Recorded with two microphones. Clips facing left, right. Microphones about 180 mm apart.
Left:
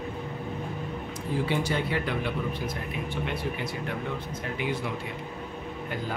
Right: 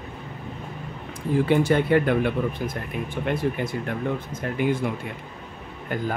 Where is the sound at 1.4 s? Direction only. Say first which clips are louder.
Right 9 dB; 55° right (ahead or behind).